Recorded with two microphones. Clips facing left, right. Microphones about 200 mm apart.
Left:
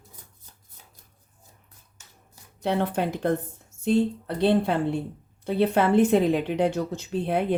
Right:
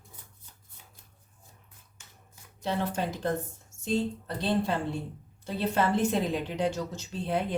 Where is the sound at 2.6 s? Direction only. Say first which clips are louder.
Left 5 dB; 60° left (ahead or behind).